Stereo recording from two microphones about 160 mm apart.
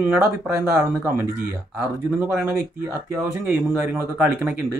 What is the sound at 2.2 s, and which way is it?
Speech, 10° right (ahead or behind).